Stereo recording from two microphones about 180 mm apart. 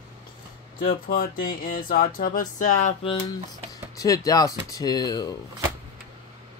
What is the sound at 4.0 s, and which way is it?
Speech, 20° left (ahead or behind).